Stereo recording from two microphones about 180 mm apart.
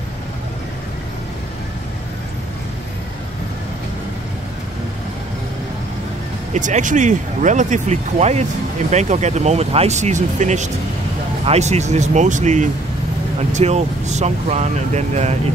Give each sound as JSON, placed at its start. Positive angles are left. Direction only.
{"t": 6.5, "sound": "speech", "side_deg": -45}